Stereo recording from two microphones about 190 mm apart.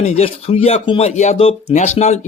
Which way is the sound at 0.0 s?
35° left (ahead or behind).